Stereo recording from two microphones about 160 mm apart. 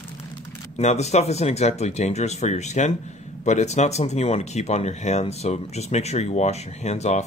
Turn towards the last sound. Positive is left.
turn(degrees=45)  # may be behind; listen again after turning